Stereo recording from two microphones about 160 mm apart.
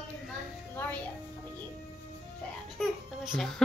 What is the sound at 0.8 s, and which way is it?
Music, 10° left (ahead or behind).